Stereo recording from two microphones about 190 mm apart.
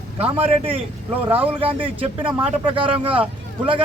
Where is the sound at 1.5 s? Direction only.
25° right (ahead or behind).